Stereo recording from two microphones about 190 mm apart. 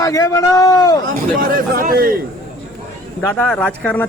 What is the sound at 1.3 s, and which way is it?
Speech, 50° right (ahead or behind).